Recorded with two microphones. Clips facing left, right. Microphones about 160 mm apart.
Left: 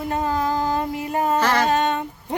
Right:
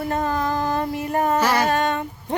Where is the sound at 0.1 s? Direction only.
15° left (ahead or behind).